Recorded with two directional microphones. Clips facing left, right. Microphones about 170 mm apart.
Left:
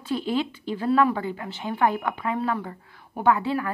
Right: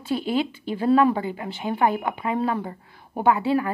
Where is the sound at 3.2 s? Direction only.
10° right (ahead or behind).